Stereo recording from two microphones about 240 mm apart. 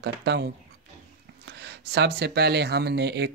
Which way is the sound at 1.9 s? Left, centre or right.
Right.